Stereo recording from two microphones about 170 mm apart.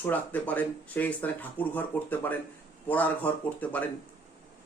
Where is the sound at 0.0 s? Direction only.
10° left (ahead or behind).